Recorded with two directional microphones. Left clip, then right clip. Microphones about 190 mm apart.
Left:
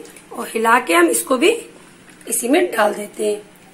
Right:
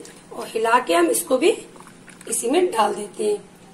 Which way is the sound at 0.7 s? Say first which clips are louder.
Left 4 dB; 20° left (ahead or behind).